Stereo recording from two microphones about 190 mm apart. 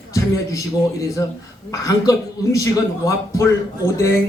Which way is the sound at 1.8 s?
15° left (ahead or behind).